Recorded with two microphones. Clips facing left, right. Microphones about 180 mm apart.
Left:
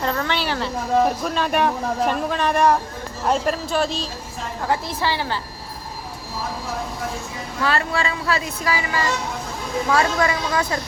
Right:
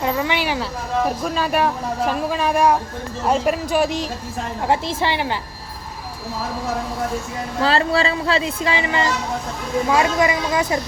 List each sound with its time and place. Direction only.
0.0 s speech: 10° right (ahead or behind)
1.0 s speech: centre (ahead or behind); by 5.4 s 20° right (ahead or behind)
7.6 s speech: 30° right (ahead or behind)